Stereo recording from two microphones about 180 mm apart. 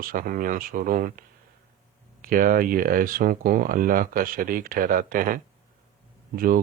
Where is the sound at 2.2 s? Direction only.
50° right (ahead or behind).